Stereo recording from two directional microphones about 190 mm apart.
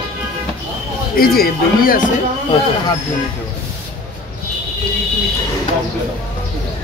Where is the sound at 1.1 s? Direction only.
50° left (ahead or behind).